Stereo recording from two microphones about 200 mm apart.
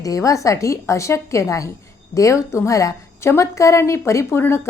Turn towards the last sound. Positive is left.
turn(degrees=10)  # may be behind; listen again after turning